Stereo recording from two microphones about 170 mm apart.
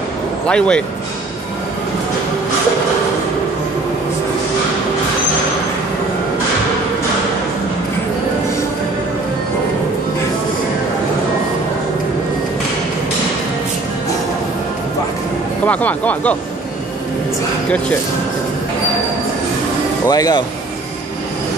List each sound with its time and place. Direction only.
0.5 s speech: 5° left (ahead or behind)
15.6 s speech: 10° left (ahead or behind)
20.1 s speech: 25° left (ahead or behind)